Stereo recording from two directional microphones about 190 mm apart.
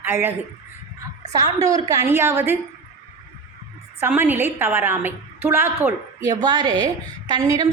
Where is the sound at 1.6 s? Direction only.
15° right (ahead or behind).